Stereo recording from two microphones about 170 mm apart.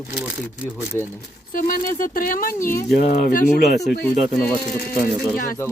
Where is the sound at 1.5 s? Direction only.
50° left (ahead or behind).